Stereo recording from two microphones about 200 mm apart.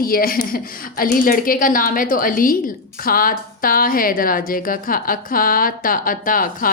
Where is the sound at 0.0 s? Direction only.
45° left (ahead or behind).